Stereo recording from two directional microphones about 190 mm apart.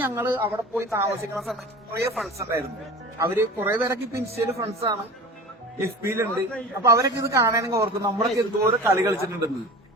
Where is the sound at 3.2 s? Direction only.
10° right (ahead or behind).